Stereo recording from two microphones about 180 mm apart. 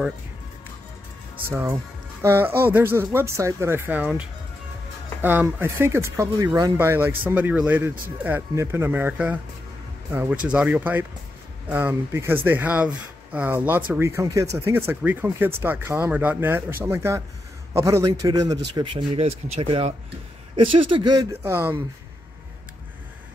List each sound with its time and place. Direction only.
1.5 s speech: 15° right (ahead or behind)
10.4 s speech: 5° right (ahead or behind)